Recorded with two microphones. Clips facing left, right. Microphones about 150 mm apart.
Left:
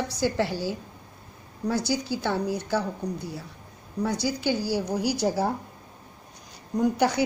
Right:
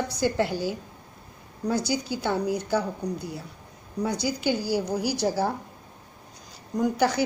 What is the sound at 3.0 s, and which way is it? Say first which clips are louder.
Speech: right 1 dB; centre (ahead or behind).